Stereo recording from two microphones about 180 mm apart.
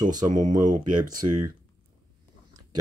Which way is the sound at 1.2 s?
25° right (ahead or behind).